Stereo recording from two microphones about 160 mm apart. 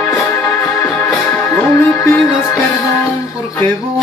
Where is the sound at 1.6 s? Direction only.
10° left (ahead or behind).